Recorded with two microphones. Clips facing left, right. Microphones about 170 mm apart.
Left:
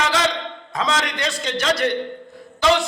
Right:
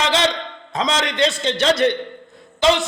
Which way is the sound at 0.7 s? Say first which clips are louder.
Right 2 dB; 20° right (ahead or behind).